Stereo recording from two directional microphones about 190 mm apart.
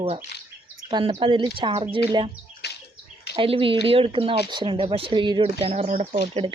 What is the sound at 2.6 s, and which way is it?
Bird, 60° left (ahead or behind).